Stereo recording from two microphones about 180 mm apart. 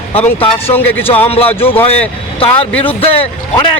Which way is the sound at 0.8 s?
10° left (ahead or behind).